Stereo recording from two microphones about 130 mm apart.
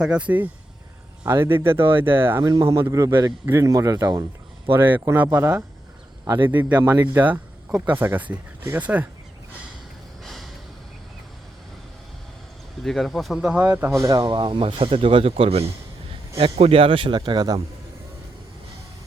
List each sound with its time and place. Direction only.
0.0 s speech: 10° right (ahead or behind); by 4.7 s 30° right (ahead or behind)
4.7 s speech: 15° right (ahead or behind)
6.2 s a man's voice: 30° right (ahead or behind)
6.5 s speech: 15° right (ahead or behind)
10.2 s a sound: centre (ahead or behind)
12.8 s speech: centre (ahead or behind); by 17.6 s 30° right (ahead or behind)